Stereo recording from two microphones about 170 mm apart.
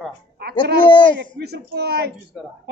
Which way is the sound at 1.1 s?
75° right (ahead or behind).